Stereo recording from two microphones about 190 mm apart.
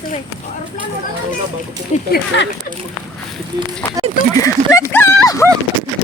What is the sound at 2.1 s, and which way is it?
Speech, 65° left (ahead or behind).